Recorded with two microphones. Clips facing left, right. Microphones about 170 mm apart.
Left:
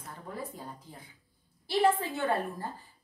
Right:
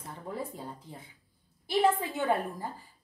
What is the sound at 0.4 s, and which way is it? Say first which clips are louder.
A woman's voice: right 2 dB; 25° right (ahead or behind).